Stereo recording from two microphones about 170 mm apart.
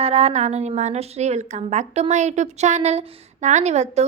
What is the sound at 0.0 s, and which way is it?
A woman's voice, 40° right (ahead or behind).